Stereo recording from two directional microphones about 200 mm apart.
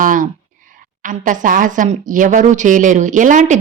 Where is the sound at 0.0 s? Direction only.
40° right (ahead or behind).